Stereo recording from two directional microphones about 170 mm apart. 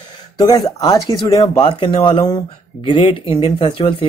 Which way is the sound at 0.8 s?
20° left (ahead or behind).